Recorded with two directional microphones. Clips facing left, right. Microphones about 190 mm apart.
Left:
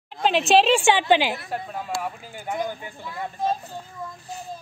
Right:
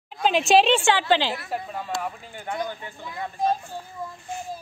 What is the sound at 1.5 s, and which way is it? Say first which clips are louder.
Speech: even; centre (ahead or behind).